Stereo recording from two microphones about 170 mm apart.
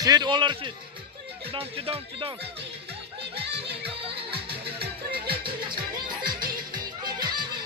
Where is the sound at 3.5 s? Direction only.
35° right (ahead or behind).